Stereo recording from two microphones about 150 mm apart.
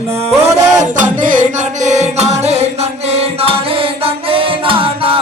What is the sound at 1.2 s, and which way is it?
Music, 55° right (ahead or behind).